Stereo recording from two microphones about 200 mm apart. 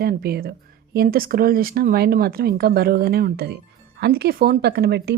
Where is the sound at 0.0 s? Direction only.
50° right (ahead or behind).